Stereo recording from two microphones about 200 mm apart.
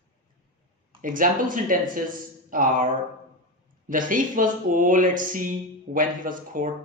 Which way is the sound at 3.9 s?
40° right (ahead or behind).